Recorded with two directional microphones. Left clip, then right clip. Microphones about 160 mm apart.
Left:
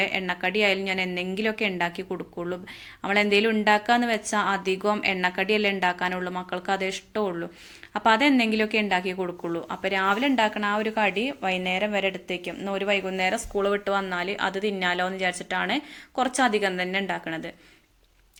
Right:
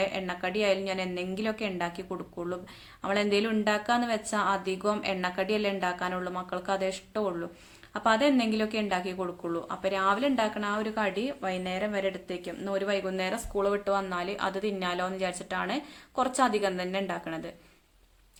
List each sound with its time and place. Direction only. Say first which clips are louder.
0.0 s a woman's voice: left 5 dB; 15° left (ahead or behind)